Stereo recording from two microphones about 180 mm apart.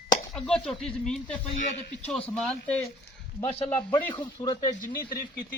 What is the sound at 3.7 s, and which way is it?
Speech, 25° left (ahead or behind).